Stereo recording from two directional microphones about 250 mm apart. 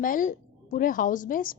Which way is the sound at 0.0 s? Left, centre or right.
Left.